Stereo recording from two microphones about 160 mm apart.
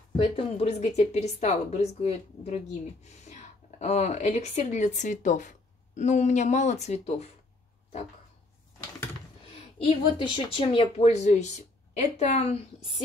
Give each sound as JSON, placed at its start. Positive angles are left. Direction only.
{"t": 0.6, "sound": "a woman's voice", "side_deg": 45}
{"t": 9.8, "sound": "a woman's voice", "side_deg": 30}